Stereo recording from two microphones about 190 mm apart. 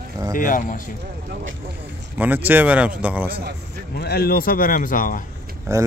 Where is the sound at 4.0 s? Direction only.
55° left (ahead or behind).